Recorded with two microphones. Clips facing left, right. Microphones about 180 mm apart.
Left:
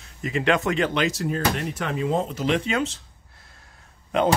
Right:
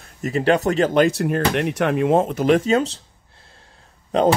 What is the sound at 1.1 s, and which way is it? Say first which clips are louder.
Speech: right 5 dB; 65° right (ahead or behind).